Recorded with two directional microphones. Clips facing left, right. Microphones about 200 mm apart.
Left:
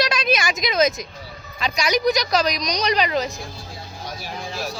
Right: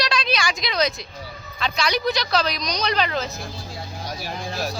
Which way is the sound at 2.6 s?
35° left (ahead or behind).